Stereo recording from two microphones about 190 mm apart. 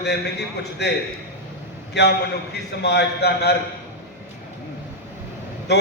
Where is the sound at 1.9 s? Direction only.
60° left (ahead or behind).